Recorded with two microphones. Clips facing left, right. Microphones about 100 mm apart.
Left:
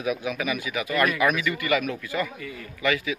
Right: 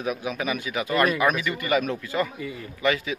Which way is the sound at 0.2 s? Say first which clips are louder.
Even; 30° right (ahead or behind).